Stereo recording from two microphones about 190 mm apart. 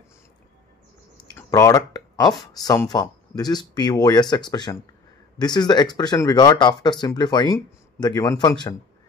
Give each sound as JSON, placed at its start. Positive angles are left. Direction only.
{"t": 1.5, "sound": "speech", "side_deg": 15}